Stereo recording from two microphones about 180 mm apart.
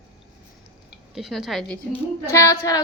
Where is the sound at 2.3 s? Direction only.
15° left (ahead or behind).